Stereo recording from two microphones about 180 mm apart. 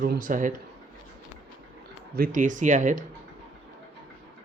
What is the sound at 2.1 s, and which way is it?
Speech, 50° right (ahead or behind).